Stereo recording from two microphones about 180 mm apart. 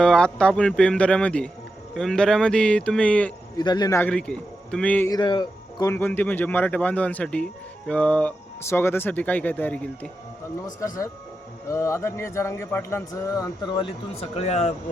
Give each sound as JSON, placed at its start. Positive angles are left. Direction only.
{"t": 0.0, "sound": "speech", "side_deg": 5}
{"t": 3.6, "sound": "speech", "side_deg": 25}
{"t": 4.1, "sound": "speech", "side_deg": 5}
{"t": 5.1, "sound": "speech", "side_deg": 25}
{"t": 11.7, "sound": "speech", "side_deg": 15}